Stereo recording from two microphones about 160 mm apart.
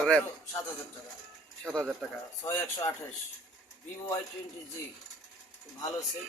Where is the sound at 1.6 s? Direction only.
5° left (ahead or behind).